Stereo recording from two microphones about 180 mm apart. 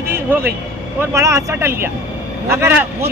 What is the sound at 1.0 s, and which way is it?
Speech, 15° right (ahead or behind).